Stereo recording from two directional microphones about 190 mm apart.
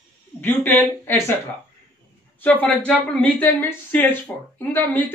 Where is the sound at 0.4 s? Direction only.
10° left (ahead or behind).